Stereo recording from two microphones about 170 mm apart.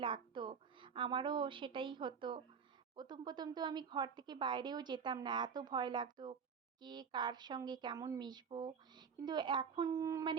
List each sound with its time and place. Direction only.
0.0 s a woman's voice: 30° right (ahead or behind)